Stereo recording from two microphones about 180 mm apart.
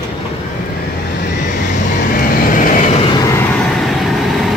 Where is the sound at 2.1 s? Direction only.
50° left (ahead or behind).